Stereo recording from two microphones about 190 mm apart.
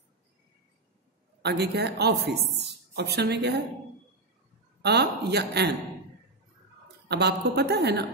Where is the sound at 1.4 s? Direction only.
60° right (ahead or behind).